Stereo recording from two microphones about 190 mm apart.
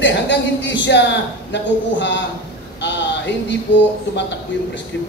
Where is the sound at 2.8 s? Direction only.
70° left (ahead or behind).